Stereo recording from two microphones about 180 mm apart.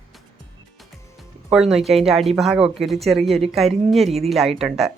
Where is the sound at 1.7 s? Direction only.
Centre (ahead or behind).